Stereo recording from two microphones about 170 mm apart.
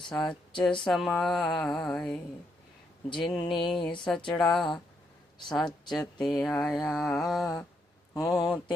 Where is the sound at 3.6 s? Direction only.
Centre (ahead or behind).